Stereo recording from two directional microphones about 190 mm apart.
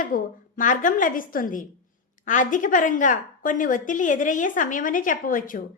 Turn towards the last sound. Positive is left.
turn(degrees=45)  # may be behind; listen again after turning